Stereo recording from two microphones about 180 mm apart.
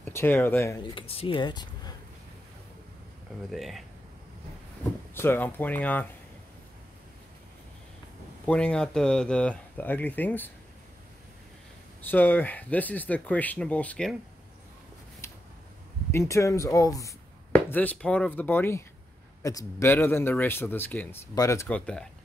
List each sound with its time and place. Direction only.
0.0 s speech: 10° left (ahead or behind)
0.9 s speech: 30° left (ahead or behind)
3.4 s speech: centre (ahead or behind)
5.1 s speech: 10° left (ahead or behind)
8.5 s speech: 5° left (ahead or behind)
12.0 s speech: 10° left (ahead or behind)
15.2 s a sound: 15° left (ahead or behind)
16.1 s speech: 15° left (ahead or behind)